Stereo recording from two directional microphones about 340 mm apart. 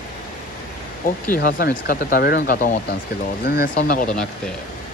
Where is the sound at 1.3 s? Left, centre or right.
Left.